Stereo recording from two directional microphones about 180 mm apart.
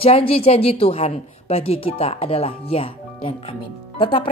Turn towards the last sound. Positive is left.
turn(degrees=30)  # may be behind; listen again after turning